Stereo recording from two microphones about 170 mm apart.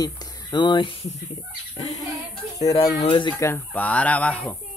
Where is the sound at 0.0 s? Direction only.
25° left (ahead or behind).